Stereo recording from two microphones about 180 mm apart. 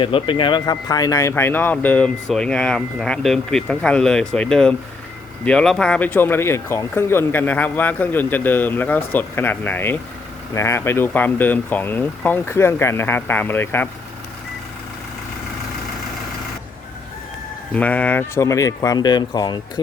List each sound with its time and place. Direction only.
0.0 s speech: 30° left (ahead or behind); by 13.8 s 10° left (ahead or behind)
17.7 s speech: 10° left (ahead or behind)